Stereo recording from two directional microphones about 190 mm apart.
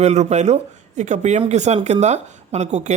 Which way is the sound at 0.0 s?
35° right (ahead or behind).